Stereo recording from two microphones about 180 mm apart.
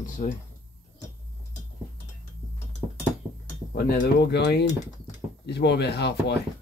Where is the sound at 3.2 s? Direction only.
15° right (ahead or behind).